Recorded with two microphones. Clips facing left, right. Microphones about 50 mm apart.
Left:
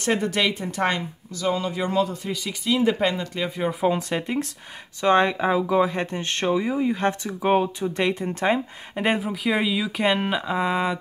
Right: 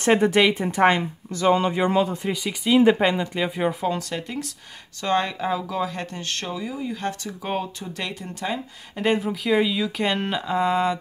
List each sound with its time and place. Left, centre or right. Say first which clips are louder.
0.0 s speech: right 5 dB; right
1.3 s speech: right 5 dB; right
3.0 s speech: right 2 dB; centre
3.8 s speech: left 3 dB; centre
9.2 s speech: right 2 dB; centre